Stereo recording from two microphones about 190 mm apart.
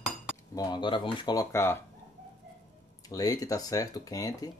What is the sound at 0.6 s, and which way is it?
Speech, 25° left (ahead or behind).